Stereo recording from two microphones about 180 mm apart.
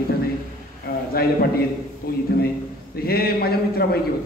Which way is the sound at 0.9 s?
60° left (ahead or behind).